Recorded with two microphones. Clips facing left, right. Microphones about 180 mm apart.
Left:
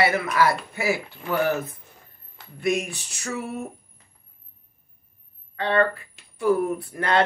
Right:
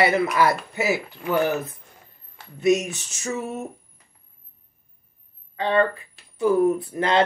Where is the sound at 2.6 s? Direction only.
20° right (ahead or behind).